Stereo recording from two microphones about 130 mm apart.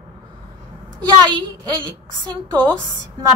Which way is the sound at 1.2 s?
35° right (ahead or behind).